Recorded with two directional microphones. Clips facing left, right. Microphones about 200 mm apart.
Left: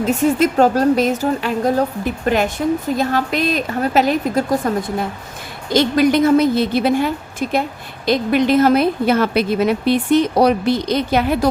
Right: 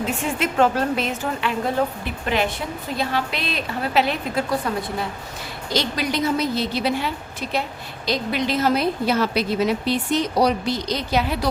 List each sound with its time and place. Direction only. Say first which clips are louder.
0.0 s a woman's voice: left 9 dB; 40° left (ahead or behind)